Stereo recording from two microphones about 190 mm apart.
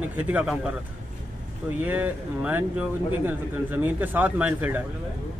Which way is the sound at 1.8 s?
10° right (ahead or behind).